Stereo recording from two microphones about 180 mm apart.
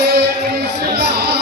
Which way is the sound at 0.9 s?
65° right (ahead or behind).